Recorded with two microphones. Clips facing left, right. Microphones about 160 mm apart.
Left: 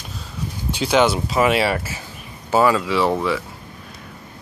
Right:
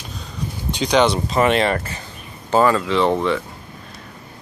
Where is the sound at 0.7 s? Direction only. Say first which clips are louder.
Even; 5° left (ahead or behind).